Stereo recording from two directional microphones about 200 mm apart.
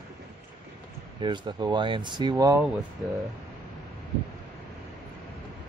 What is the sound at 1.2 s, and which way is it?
Speech, 20° right (ahead or behind).